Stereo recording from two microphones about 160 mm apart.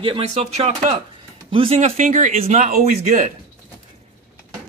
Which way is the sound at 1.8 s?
50° right (ahead or behind).